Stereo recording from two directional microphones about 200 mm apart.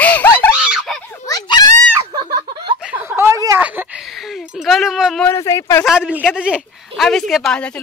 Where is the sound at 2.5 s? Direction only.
25° right (ahead or behind).